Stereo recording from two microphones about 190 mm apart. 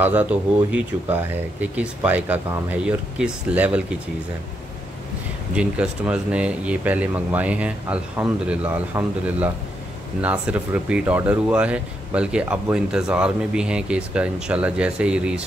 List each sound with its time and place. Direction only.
0.0 s speech: 10° right (ahead or behind)
5.5 s speech: 5° right (ahead or behind)